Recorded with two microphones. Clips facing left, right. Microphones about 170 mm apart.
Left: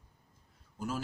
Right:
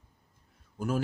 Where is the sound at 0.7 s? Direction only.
55° right (ahead or behind).